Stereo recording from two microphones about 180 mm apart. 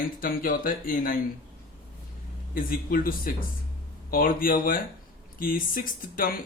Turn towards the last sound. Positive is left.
turn(degrees=50)  # may be behind; listen again after turning